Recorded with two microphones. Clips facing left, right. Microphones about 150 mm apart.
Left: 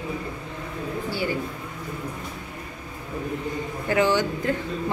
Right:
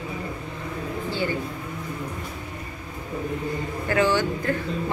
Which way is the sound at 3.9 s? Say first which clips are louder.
Even; 15° left (ahead or behind).